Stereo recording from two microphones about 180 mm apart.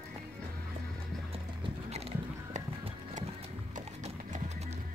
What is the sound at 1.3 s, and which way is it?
Music, 35° right (ahead or behind).